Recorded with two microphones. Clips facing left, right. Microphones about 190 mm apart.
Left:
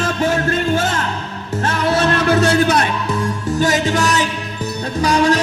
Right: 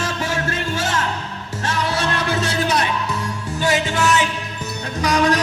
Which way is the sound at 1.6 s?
60° left (ahead or behind).